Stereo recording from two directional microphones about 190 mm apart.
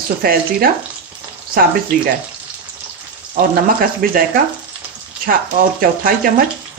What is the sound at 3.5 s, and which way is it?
Speech, 50° right (ahead or behind).